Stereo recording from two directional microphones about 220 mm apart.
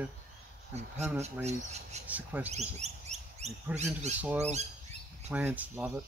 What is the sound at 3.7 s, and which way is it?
Speech, 30° right (ahead or behind).